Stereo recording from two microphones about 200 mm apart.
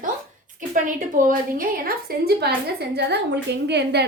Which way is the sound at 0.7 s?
40° right (ahead or behind).